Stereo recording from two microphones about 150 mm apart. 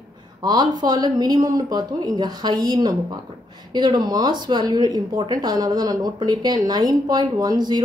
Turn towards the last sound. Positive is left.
turn(degrees=-25)  # may be behind; listen again after turning